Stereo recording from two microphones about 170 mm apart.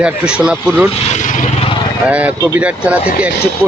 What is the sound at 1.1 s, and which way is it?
Vehicle, 45° left (ahead or behind).